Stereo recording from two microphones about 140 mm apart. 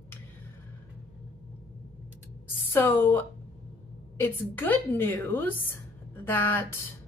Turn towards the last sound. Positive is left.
turn(degrees=15)  # may be behind; listen again after turning